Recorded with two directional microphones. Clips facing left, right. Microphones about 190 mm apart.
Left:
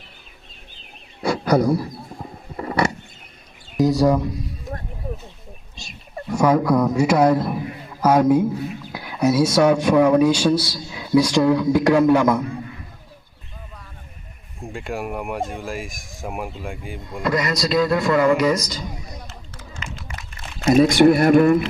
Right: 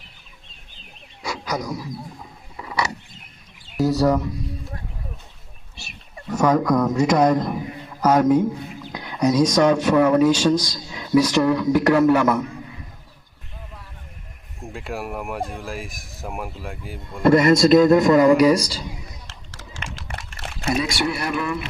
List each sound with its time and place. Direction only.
1.2 s a sound: 55° left (ahead or behind)
3.8 s bird: 15° left (ahead or behind)
5.7 s a sound: 15° left (ahead or behind)
8.0 s a man's voice: 10° left (ahead or behind)
14.7 s speech: centre (ahead or behind)
17.2 s speech: 50° right (ahead or behind); by 18.8 s 30° right (ahead or behind)
19.3 s typing: 90° right
20.7 s speech: 50° left (ahead or behind)